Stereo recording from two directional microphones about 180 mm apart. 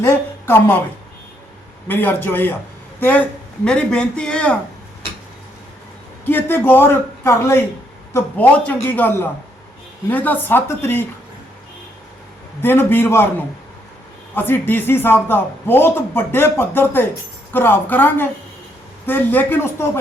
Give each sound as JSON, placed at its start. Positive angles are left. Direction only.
{"t": 0.0, "sound": "a woman's voice", "side_deg": 15}
{"t": 1.9, "sound": "a man's voice", "side_deg": 10}
{"t": 6.2, "sound": "a man's voice", "side_deg": 10}
{"t": 12.6, "sound": "a man's voice", "side_deg": 10}
{"t": 14.3, "sound": "a man's voice", "side_deg": 10}